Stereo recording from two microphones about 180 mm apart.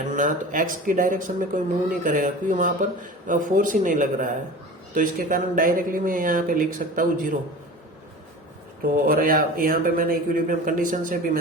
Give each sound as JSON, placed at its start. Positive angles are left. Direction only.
{"t": 0.1, "sound": "speech", "side_deg": -45}
{"t": 8.8, "sound": "speech", "side_deg": -55}